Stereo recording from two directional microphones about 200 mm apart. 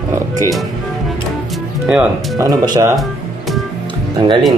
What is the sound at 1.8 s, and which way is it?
Speech, 5° right (ahead or behind).